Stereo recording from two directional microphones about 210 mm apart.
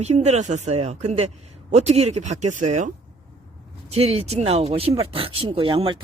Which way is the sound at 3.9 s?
30° right (ahead or behind).